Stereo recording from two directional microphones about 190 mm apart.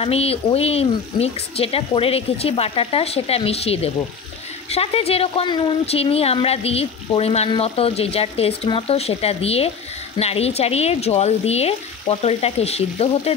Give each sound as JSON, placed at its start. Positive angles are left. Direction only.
{"t": 0.0, "sound": "speech", "side_deg": 30}